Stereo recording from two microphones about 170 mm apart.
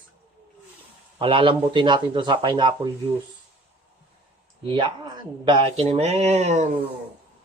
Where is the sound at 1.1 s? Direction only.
30° right (ahead or behind).